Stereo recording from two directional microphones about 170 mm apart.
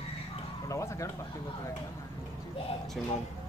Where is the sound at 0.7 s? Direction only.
15° left (ahead or behind).